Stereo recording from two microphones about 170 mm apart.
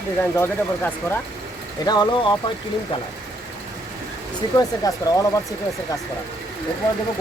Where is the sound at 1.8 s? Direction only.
25° left (ahead or behind).